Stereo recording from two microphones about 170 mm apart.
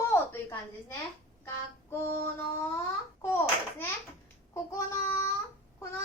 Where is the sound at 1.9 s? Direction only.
15° left (ahead or behind).